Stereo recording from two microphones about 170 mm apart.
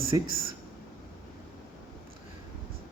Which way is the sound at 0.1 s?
20° right (ahead or behind).